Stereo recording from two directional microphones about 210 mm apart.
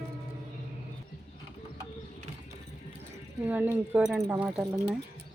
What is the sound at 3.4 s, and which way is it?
Speech, 10° right (ahead or behind).